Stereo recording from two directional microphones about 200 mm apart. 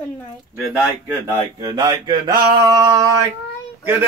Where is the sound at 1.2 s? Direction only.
20° right (ahead or behind).